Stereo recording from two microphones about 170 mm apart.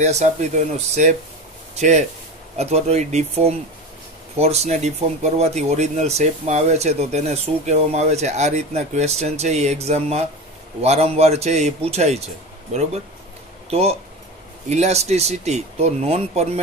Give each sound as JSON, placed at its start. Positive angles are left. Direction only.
{"t": 0.0, "sound": "speech", "side_deg": -45}
{"t": 13.7, "sound": "speech", "side_deg": -35}